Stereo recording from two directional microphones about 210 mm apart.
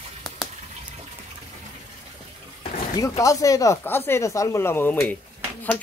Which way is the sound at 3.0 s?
15° left (ahead or behind).